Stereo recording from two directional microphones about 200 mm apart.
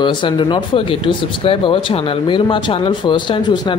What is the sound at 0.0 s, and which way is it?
Speech, 25° left (ahead or behind).